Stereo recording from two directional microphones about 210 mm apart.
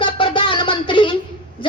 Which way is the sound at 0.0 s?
25° left (ahead or behind).